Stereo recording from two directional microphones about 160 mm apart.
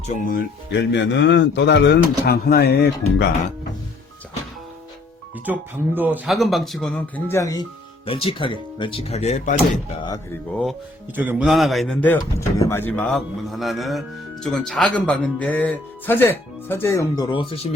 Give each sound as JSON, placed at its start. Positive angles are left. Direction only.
{"t": 0.0, "sound": "speech", "side_deg": 55}
{"t": 5.5, "sound": "speech", "side_deg": -10}
{"t": 7.3, "sound": "speech", "side_deg": 20}
{"t": 8.0, "sound": "speech", "side_deg": 35}
{"t": 11.1, "sound": "speech", "side_deg": -10}